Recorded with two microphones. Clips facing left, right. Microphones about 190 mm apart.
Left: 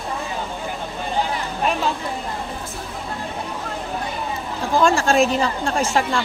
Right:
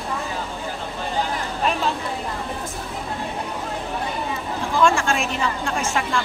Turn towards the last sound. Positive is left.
turn(degrees=35)  # may be behind; listen again after turning